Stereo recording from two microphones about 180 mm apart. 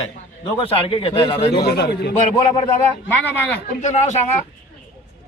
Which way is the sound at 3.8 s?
40° left (ahead or behind).